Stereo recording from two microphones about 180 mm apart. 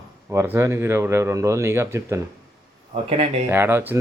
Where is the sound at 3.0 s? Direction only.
30° right (ahead or behind).